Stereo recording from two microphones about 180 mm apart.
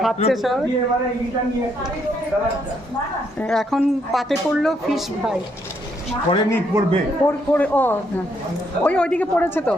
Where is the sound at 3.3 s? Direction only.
5° left (ahead or behind).